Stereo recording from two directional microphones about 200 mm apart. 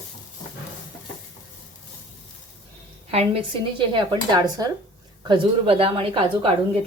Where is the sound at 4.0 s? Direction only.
20° right (ahead or behind).